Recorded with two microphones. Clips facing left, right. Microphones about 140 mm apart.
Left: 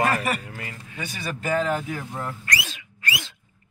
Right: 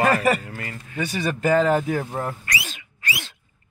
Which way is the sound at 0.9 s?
55° right (ahead or behind).